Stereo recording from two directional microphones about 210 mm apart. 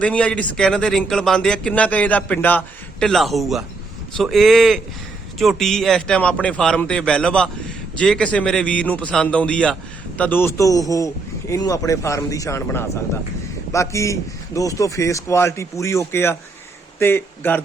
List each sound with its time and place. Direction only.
0.0 s a man's voice: 5° left (ahead or behind)